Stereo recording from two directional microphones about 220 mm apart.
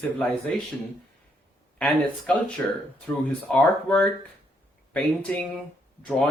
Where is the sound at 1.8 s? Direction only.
5° left (ahead or behind).